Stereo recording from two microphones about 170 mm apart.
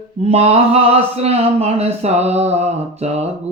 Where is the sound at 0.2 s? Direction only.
35° right (ahead or behind).